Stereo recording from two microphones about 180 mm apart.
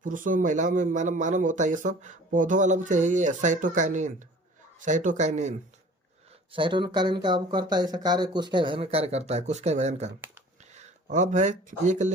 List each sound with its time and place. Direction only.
0.0 s a man's voice: 45° right (ahead or behind)
6.5 s speech: 25° right (ahead or behind)